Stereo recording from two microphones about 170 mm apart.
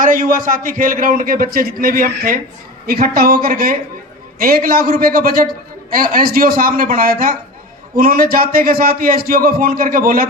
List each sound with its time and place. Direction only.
0.0 s a man's voice: 55° right (ahead or behind)